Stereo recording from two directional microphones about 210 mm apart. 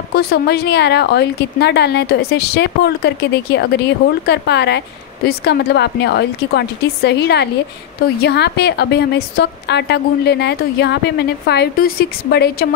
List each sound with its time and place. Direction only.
0.1 s a woman's voice: 45° left (ahead or behind)